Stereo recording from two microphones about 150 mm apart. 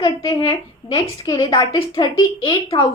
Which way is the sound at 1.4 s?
25° left (ahead or behind).